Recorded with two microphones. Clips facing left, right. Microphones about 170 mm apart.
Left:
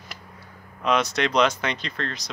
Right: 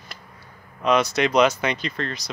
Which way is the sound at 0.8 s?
Centre (ahead or behind).